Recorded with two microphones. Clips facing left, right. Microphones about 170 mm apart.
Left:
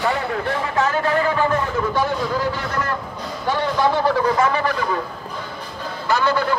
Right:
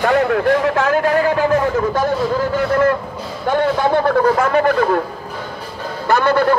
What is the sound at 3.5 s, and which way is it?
Speech, 55° right (ahead or behind).